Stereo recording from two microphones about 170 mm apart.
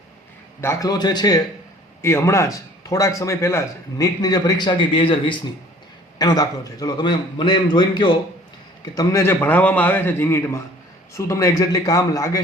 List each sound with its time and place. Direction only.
0.6 s a man's voice: 15° left (ahead or behind)